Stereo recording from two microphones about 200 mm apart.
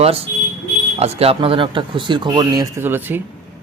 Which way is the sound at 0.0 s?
30° right (ahead or behind).